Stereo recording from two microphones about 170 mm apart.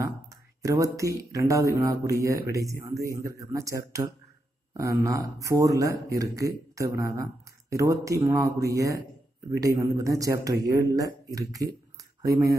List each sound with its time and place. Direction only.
0.6 s speech: 20° right (ahead or behind)